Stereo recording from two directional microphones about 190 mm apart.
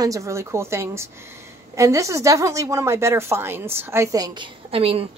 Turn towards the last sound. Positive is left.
turn(degrees=-30)  # may be behind; listen again after turning